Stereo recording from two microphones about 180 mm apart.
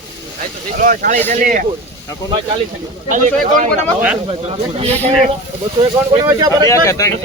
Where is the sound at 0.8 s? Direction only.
50° right (ahead or behind).